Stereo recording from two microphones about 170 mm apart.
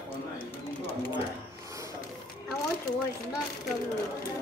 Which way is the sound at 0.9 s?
30° left (ahead or behind).